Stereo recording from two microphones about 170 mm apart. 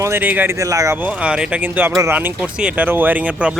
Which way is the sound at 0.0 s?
10° right (ahead or behind).